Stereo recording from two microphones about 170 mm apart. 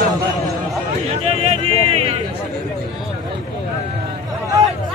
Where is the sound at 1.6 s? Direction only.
35° right (ahead or behind).